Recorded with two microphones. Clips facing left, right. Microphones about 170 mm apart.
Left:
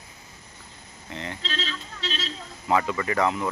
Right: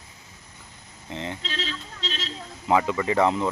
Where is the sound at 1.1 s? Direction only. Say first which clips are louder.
Right 3 dB; 20° right (ahead or behind).